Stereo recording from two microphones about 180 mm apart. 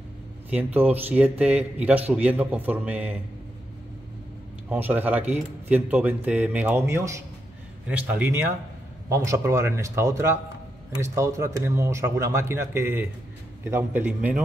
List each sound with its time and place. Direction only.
0.5 s speech: 10° right (ahead or behind)
4.6 s speech: 10° right (ahead or behind)